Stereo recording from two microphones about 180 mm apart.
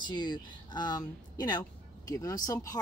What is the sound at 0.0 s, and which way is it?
Speech, 25° left (ahead or behind).